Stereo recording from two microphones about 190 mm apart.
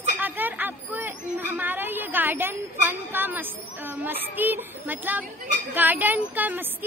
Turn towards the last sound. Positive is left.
turn(degrees=-10)  # may be behind; listen again after turning